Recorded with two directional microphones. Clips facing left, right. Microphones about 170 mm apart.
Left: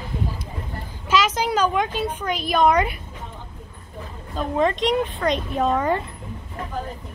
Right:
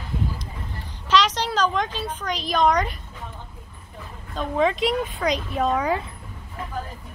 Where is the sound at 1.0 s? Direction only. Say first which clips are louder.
Even; 10° left (ahead or behind).